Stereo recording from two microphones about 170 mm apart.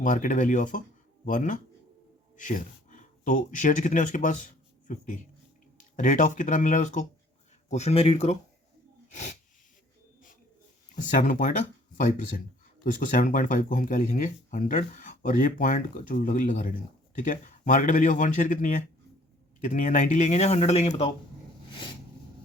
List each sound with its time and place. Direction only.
0.0 s speech: 50° left (ahead or behind)
10.9 s speech: 45° left (ahead or behind)